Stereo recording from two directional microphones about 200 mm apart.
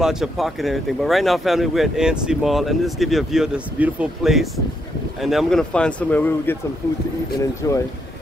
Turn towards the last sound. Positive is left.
turn(degrees=15)  # may be behind; listen again after turning